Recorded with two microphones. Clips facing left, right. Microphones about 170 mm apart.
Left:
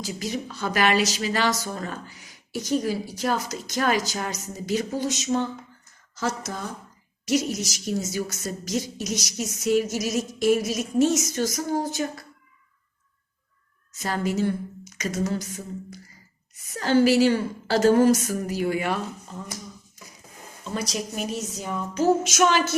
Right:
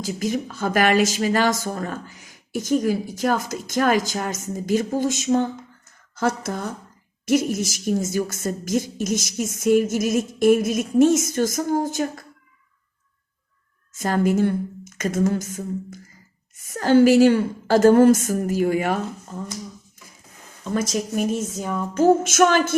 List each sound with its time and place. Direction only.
0.2 s speech: 50° right (ahead or behind)
13.9 s a woman's voice: 50° right (ahead or behind)
20.7 s speech: 50° right (ahead or behind)